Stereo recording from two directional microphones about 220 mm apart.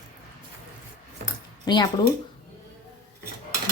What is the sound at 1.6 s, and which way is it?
Speech, 20° left (ahead or behind).